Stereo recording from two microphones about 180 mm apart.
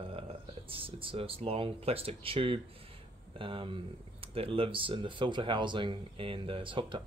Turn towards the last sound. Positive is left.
turn(degrees=-30)  # may be behind; listen again after turning